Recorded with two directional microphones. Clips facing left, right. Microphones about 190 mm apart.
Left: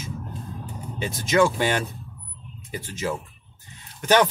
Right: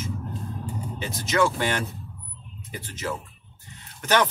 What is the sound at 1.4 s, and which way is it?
Speech, 15° left (ahead or behind).